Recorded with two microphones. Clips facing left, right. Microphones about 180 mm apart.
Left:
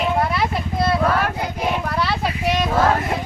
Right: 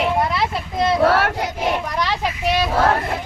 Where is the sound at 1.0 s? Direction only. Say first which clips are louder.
Right 3 dB; 80° right.